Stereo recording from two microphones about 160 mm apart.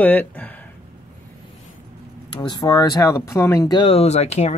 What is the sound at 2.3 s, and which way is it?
Speech, 25° left (ahead or behind).